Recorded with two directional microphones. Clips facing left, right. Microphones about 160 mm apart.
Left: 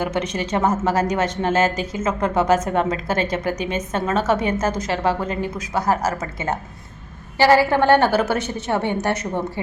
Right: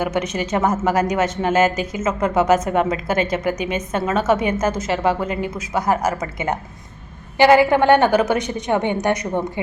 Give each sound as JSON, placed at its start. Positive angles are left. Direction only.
{"t": 0.0, "sound": "a woman's voice", "side_deg": -10}